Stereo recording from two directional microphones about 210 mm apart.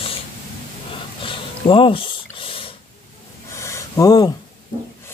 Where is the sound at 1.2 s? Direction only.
25° left (ahead or behind).